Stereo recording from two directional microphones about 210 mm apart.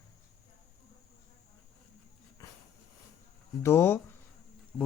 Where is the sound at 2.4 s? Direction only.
15° left (ahead or behind).